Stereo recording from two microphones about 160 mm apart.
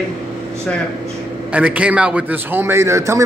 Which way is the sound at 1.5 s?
10° right (ahead or behind).